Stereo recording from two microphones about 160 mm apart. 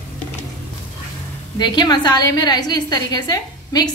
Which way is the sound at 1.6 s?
25° left (ahead or behind).